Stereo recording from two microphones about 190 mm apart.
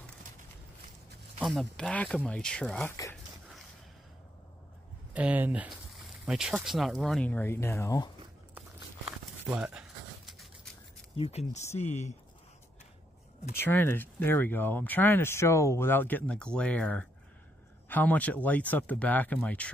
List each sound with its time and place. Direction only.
1.4 s speech: centre (ahead or behind)
5.1 s speech: 10° right (ahead or behind); by 8.1 s 15° left (ahead or behind)
8.5 s crumpling: 5° right (ahead or behind)
11.1 s speech: 35° left (ahead or behind)
13.7 s speech: 10° left (ahead or behind)